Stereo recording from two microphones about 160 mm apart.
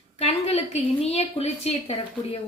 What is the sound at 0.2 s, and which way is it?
A woman's voice, 40° left (ahead or behind).